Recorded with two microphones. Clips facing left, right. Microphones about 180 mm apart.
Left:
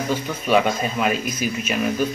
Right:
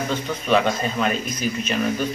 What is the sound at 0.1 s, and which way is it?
Speech, 10° left (ahead or behind).